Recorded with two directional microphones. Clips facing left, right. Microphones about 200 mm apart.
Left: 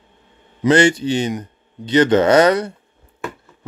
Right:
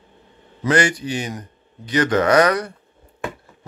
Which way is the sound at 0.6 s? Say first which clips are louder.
Left 5 dB; 25° left (ahead or behind).